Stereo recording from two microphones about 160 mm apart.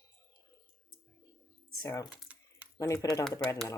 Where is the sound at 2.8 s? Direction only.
20° left (ahead or behind).